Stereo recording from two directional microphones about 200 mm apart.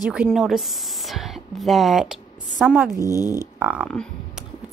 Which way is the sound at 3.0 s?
15° left (ahead or behind).